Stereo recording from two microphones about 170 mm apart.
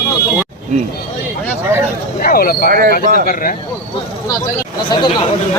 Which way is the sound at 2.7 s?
55° right (ahead or behind).